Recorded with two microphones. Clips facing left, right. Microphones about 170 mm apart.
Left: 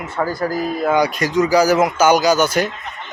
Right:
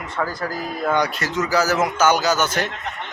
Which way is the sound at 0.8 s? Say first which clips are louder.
Left 3 dB; 10° left (ahead or behind).